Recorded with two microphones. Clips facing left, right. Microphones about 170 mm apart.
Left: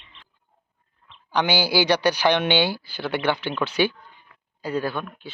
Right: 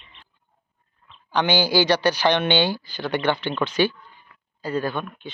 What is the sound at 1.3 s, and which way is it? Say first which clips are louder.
Speech: right 1 dB; 10° left (ahead or behind).